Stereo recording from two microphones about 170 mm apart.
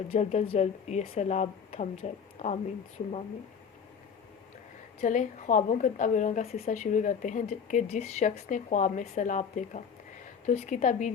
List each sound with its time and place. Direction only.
0.1 s speech: 40° left (ahead or behind)
4.9 s a woman's voice: 50° left (ahead or behind)